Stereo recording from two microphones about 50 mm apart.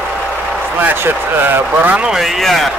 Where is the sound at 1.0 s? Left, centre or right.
Right.